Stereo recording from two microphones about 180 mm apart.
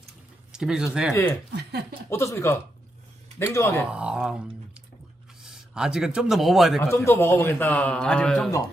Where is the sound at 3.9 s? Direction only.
5° right (ahead or behind).